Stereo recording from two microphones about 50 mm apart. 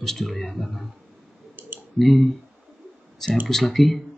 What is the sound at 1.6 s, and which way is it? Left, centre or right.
Clicking, right.